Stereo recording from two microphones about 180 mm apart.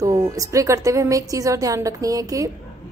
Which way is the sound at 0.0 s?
20° right (ahead or behind).